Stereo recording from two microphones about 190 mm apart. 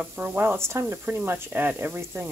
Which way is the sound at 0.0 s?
10° right (ahead or behind).